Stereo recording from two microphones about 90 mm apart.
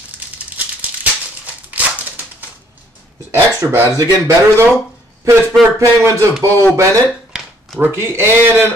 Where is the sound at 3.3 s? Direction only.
25° right (ahead or behind).